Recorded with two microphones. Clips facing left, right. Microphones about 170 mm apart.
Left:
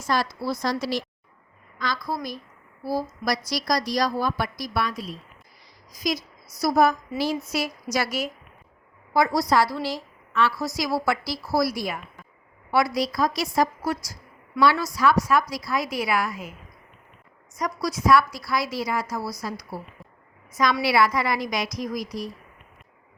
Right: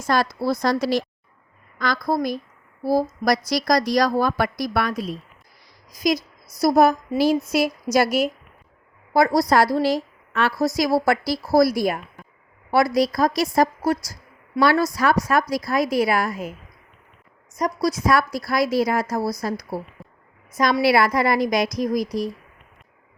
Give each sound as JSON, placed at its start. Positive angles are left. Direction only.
{"t": 0.1, "sound": "a woman's voice", "side_deg": -50}
{"t": 17.6, "sound": "a woman's voice", "side_deg": -40}
{"t": 20.0, "sound": "a sound", "side_deg": 0}
{"t": 20.8, "sound": "a woman's voice", "side_deg": -45}